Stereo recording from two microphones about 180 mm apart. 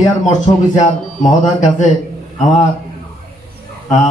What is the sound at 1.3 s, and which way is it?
Speech, 40° left (ahead or behind).